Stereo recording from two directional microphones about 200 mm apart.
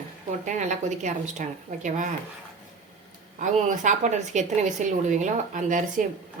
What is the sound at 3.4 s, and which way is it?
Speech, 40° right (ahead or behind).